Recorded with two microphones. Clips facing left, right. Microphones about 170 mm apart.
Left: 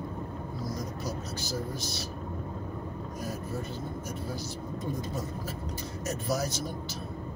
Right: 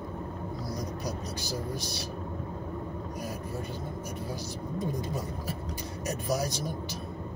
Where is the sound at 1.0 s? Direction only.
15° right (ahead or behind).